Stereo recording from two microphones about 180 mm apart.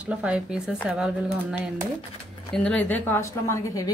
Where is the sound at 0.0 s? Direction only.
5° right (ahead or behind).